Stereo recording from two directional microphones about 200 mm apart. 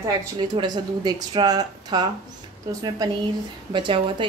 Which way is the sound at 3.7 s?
25° right (ahead or behind).